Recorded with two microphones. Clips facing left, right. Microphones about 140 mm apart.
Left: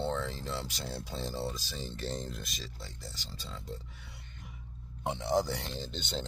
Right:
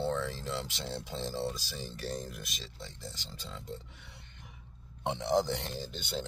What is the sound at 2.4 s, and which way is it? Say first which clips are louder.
Speech: even; 20° right (ahead or behind).